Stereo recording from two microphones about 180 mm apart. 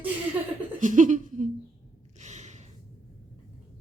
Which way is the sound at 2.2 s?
40° right (ahead or behind).